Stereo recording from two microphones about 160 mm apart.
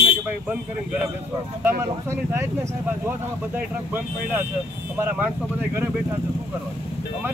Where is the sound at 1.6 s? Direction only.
15° right (ahead or behind).